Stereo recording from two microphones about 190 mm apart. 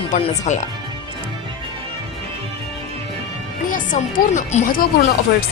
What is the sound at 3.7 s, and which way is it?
A woman's voice, 45° left (ahead or behind).